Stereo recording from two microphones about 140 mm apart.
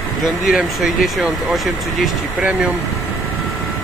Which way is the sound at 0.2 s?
5° right (ahead or behind).